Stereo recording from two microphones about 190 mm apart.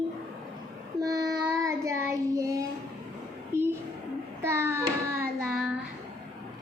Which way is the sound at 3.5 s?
15° right (ahead or behind).